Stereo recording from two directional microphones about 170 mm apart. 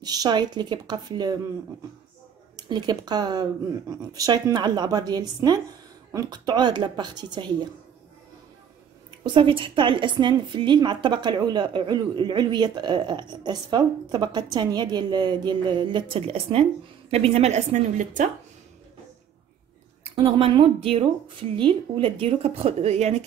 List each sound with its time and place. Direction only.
0.0 s a woman's voice: 25° right (ahead or behind)
2.5 s a woman's voice: 25° right (ahead or behind)
9.2 s a woman's voice: 30° right (ahead or behind); by 18.3 s 45° right (ahead or behind)
20.2 s speech: 35° right (ahead or behind)